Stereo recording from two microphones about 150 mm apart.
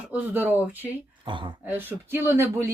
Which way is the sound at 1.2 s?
35° right (ahead or behind).